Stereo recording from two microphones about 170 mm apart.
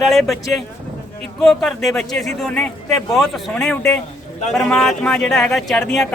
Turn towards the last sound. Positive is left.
turn(degrees=5)  # may be behind; listen again after turning